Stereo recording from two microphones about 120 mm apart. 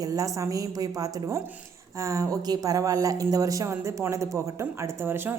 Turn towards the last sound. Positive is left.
turn(degrees=-20)  # may be behind; listen again after turning